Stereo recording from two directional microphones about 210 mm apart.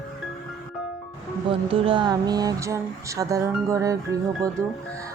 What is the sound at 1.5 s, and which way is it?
Speech, 25° right (ahead or behind).